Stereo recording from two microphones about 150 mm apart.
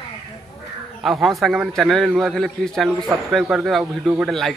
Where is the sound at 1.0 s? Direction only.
Centre (ahead or behind).